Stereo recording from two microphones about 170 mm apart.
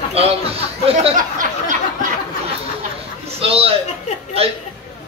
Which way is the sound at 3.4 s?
35° right (ahead or behind).